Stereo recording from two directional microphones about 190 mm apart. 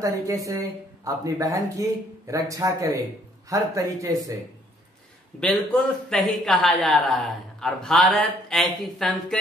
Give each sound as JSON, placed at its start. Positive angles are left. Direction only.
{"t": 0.0, "sound": "speech", "side_deg": -15}
{"t": 5.4, "sound": "speech", "side_deg": 5}